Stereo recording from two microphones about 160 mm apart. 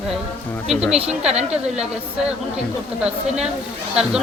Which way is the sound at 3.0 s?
5° right (ahead or behind).